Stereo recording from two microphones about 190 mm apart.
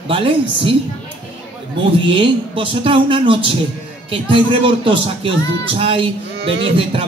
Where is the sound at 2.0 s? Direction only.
25° right (ahead or behind).